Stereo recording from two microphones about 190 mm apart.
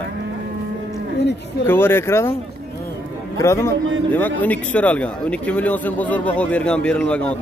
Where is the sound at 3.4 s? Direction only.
15° left (ahead or behind).